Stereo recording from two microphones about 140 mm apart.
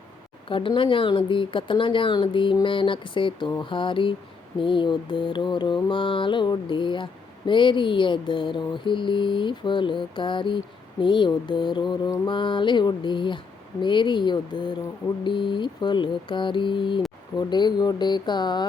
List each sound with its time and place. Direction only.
0.4 s mantra: 40° left (ahead or behind)